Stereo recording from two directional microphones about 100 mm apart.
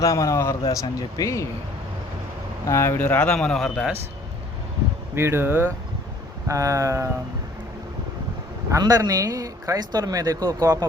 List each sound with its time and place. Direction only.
0.0 s speech: 35° left (ahead or behind)
2.6 s speech: 25° left (ahead or behind)
3.3 s a man's voice: 5° left (ahead or behind)
5.1 s speech: 25° right (ahead or behind)
6.5 s speech: 35° right (ahead or behind)
8.8 s speech: 40° right (ahead or behind)